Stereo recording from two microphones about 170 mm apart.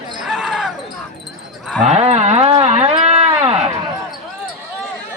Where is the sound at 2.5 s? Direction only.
40° right (ahead or behind).